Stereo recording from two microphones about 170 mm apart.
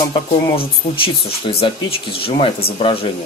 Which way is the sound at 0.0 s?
25° left (ahead or behind).